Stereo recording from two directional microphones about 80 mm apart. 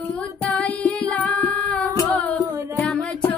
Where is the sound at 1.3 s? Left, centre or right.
Centre.